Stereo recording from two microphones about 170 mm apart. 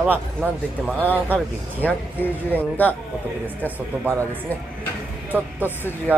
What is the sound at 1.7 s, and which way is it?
Speech, 10° left (ahead or behind).